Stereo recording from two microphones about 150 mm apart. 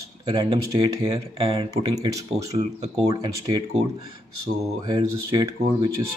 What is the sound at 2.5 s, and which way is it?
Speech, 40° right (ahead or behind).